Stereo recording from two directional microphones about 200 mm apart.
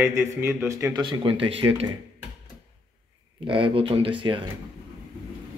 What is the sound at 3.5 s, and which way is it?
Speech, 25° right (ahead or behind).